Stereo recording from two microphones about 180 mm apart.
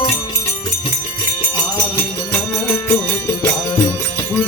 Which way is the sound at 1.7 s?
15° left (ahead or behind).